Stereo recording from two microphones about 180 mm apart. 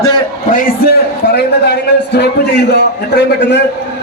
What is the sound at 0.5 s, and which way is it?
A man's voice, 60° left (ahead or behind).